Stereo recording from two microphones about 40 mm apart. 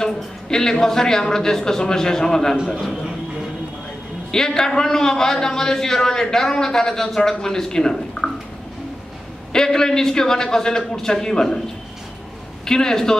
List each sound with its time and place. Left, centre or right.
0.0 s a man's voice: centre
4.3 s a man's voice: centre
9.5 s a man's voice: centre
12.6 s a man's voice: centre